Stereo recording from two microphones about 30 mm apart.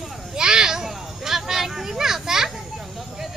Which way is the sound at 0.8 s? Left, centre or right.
Centre.